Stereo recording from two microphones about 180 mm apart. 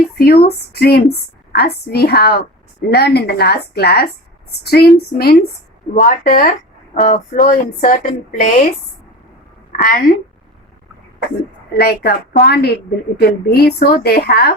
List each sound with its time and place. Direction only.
0.4 s a woman's voice: 60° left (ahead or behind); by 8.6 s 45° left (ahead or behind)
9.7 s speech: 50° left (ahead or behind)
11.7 s a woman's voice: 55° left (ahead or behind)